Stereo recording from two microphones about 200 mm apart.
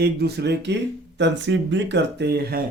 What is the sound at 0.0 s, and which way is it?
Speech, 55° right (ahead or behind).